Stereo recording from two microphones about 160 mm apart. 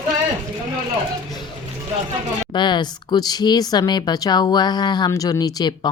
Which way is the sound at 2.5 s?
30° left (ahead or behind).